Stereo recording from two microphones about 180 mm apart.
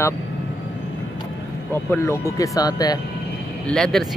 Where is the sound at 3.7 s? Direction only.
Centre (ahead or behind).